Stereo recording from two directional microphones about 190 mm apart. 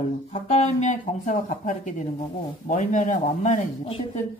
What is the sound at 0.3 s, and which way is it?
Speech, 35° left (ahead or behind).